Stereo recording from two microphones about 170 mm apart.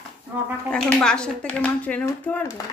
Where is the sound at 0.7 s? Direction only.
5° left (ahead or behind).